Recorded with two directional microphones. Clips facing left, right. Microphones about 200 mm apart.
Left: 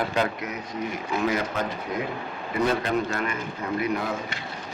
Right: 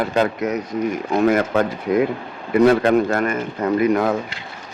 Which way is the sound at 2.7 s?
55° right (ahead or behind).